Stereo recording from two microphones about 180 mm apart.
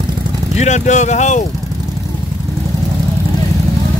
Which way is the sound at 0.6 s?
40° left (ahead or behind).